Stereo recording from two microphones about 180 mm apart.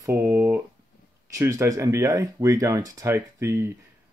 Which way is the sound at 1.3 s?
15° right (ahead or behind).